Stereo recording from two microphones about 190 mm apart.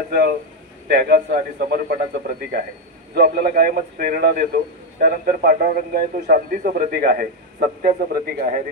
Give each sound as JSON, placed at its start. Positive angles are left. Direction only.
{"t": 0.8, "sound": "a man's voice", "side_deg": -55}